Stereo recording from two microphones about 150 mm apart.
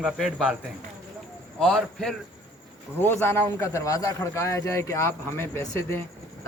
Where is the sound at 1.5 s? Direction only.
5° left (ahead or behind).